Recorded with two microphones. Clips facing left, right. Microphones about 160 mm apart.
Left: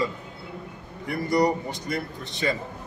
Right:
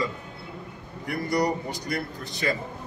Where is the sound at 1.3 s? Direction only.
25° left (ahead or behind).